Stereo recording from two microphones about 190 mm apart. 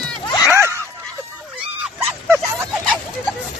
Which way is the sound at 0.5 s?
15° right (ahead or behind).